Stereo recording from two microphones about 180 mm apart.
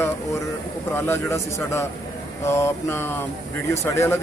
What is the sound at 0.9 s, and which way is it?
Speech, 15° left (ahead or behind).